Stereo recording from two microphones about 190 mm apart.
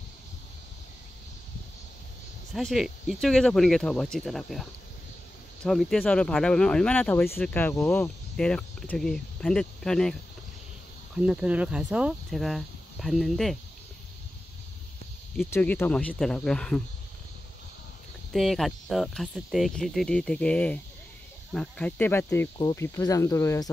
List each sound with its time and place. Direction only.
2.5 s speech: centre (ahead or behind)
11.1 s speech: 5° right (ahead or behind)
15.5 s speech: 10° left (ahead or behind)
18.3 s speech: centre (ahead or behind)
22.6 s speech: 25° left (ahead or behind)